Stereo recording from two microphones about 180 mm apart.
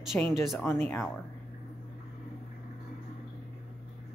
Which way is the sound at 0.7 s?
10° left (ahead or behind).